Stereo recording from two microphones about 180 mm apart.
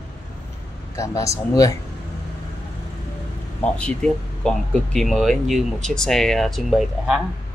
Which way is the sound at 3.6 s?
5° left (ahead or behind).